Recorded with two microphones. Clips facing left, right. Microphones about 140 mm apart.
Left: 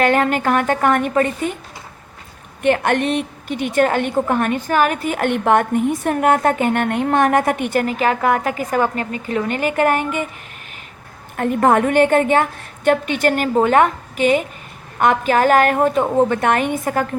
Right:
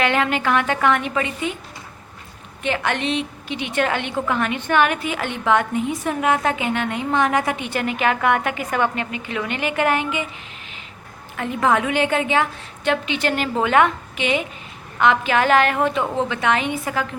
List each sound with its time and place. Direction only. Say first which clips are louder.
0.0 s a woman's voice: left 4 dB; 45° left (ahead or behind)
2.6 s a woman's voice: left 7 dB; 50° left (ahead or behind)
11.3 s a woman's voice: left 5 dB; 50° left (ahead or behind)